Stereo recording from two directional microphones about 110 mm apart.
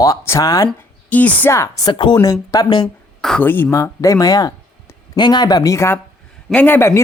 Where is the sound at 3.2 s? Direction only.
5° left (ahead or behind).